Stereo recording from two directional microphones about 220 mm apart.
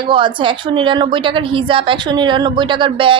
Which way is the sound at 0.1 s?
20° right (ahead or behind).